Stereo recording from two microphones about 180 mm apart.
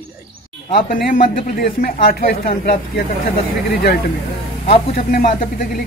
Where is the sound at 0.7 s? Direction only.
55° left (ahead or behind).